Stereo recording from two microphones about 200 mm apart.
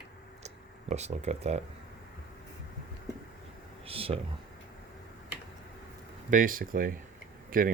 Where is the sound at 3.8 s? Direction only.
30° right (ahead or behind).